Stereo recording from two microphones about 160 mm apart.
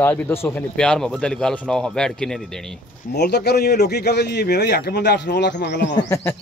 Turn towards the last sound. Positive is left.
turn(degrees=20)  # may be behind; listen again after turning